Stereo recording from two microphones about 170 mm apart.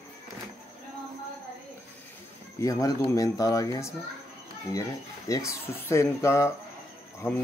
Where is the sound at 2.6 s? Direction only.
20° left (ahead or behind).